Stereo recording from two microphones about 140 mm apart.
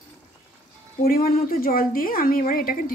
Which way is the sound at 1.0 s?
90° left.